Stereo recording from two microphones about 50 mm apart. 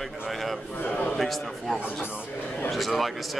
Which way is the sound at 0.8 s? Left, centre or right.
Left.